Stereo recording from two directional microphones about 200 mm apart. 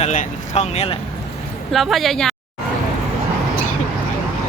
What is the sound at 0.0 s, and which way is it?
Speech, 35° left (ahead or behind).